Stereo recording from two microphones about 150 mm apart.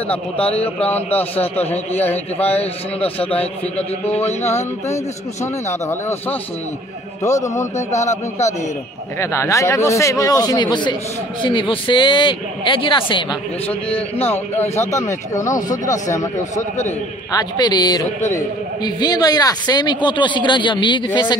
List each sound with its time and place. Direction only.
1.1 s speech: 10° left (ahead or behind)
2.5 s speech: 40° left (ahead or behind)
3.3 s speech: 10° left (ahead or behind)
4.1 s a sound: 45° left (ahead or behind)
5.4 s a man's voice: 20° left (ahead or behind)
7.7 s a sound: 50° left (ahead or behind)
9.2 s a man's voice: 20° left (ahead or behind)
14.2 s a man's voice: 15° left (ahead or behind)
16.5 s a sound: 50° left (ahead or behind)
17.3 s a man's voice: 25° left (ahead or behind)